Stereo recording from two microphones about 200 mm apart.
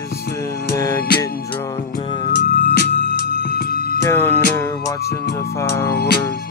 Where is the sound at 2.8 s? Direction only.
55° left (ahead or behind).